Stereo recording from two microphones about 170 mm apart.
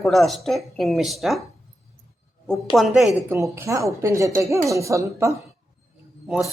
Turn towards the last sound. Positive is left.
turn(degrees=-5)  # may be behind; listen again after turning